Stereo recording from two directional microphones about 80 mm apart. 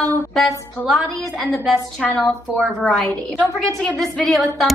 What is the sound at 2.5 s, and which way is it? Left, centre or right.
A woman's voice, centre.